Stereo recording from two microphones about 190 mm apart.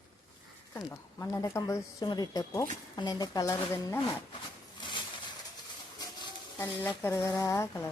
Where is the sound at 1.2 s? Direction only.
20° left (ahead or behind).